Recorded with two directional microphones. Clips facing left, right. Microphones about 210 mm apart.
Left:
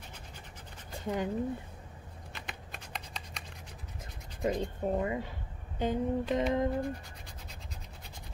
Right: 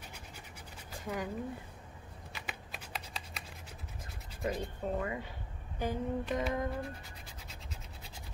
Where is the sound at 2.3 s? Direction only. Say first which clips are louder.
Even; 5° right (ahead or behind).